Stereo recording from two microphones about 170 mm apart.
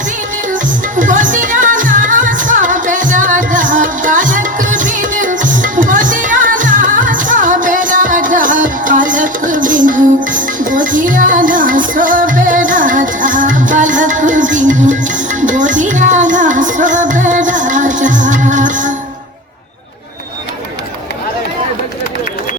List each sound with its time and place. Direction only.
0.4 s music: 50° right (ahead or behind)